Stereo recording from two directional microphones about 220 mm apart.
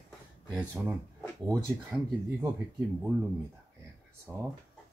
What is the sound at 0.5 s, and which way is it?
Speech, 10° right (ahead or behind).